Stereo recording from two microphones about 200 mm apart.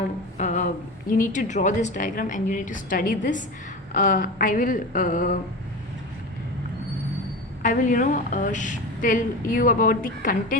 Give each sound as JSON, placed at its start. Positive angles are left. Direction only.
{"t": 0.3, "sound": "a sound", "side_deg": 35}
{"t": 1.1, "sound": "a woman's voice", "side_deg": 40}
{"t": 7.6, "sound": "a woman's voice", "side_deg": 40}